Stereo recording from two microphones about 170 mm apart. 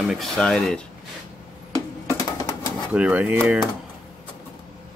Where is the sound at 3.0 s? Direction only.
10° right (ahead or behind).